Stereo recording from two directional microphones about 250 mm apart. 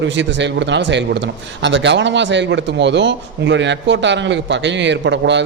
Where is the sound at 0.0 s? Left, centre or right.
Right.